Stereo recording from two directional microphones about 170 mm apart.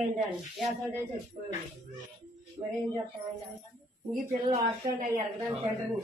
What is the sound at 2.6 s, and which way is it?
Speech, 20° right (ahead or behind).